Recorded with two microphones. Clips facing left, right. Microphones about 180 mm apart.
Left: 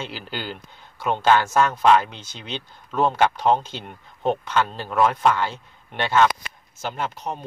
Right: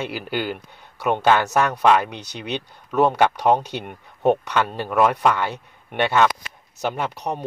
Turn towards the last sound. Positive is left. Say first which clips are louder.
# right 3 dB
turn(degrees=-70)  # may be behind; listen again after turning